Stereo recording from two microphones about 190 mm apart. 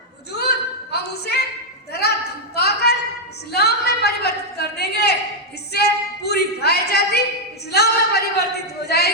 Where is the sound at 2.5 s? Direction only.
60° left (ahead or behind).